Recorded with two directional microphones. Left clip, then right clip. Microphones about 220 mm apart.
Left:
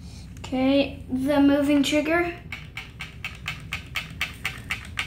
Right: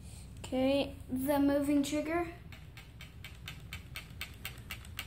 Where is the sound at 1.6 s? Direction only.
Centre (ahead or behind).